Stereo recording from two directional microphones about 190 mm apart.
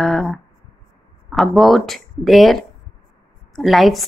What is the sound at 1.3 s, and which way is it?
A woman's voice, centre (ahead or behind).